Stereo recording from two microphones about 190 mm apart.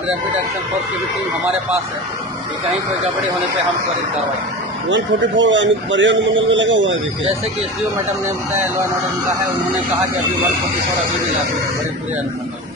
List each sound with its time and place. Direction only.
4.8 s a man's voice: 75° right (ahead or behind)